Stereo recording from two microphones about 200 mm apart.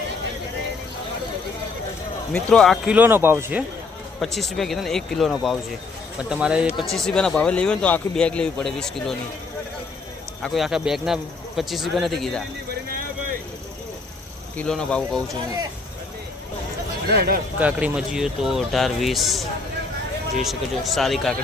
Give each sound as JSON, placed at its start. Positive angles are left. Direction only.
{"t": 2.3, "sound": "speech", "side_deg": 5}
{"t": 4.2, "sound": "speech", "side_deg": 0}
{"t": 10.4, "sound": "speech", "side_deg": 0}
{"t": 14.5, "sound": "speech", "side_deg": 5}
{"t": 17.1, "sound": "speech", "side_deg": -50}
{"t": 17.6, "sound": "speech", "side_deg": -5}